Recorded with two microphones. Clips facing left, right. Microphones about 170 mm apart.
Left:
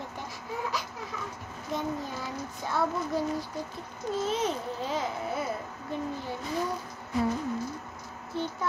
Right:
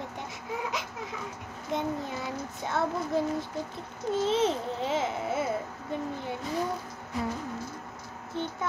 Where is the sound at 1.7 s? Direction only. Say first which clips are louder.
Right 1 dB; 20° right (ahead or behind).